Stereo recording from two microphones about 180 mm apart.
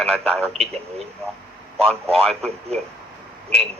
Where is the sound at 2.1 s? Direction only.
5° left (ahead or behind).